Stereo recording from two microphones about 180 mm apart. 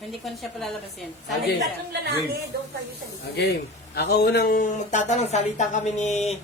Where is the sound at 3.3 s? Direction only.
65° left (ahead or behind); by 6.1 s 40° left (ahead or behind).